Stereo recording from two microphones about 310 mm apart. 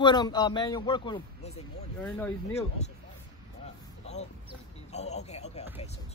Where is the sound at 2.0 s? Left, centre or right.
Centre.